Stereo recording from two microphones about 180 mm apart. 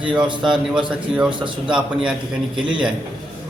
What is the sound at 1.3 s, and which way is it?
Speech, 25° right (ahead or behind).